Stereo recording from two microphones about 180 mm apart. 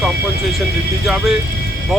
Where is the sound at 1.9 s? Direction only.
Centre (ahead or behind).